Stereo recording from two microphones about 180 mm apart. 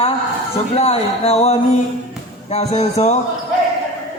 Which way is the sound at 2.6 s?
35° left (ahead or behind).